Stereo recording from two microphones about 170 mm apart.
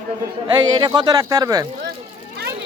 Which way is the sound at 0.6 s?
25° right (ahead or behind).